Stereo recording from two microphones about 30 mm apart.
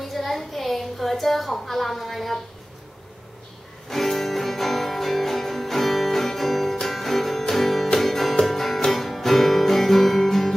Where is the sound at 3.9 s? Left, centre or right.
Centre.